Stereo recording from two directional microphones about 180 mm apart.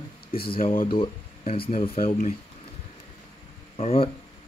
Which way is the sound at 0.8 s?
30° left (ahead or behind).